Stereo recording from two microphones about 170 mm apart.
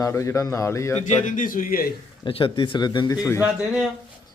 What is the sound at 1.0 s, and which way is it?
Speech, 50° left (ahead or behind).